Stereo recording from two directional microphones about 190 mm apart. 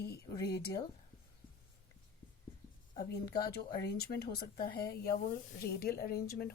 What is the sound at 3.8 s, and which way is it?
Speech, 60° left (ahead or behind).